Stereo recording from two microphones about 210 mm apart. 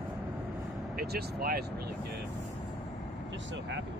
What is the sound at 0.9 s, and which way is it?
Speech, 45° right (ahead or behind).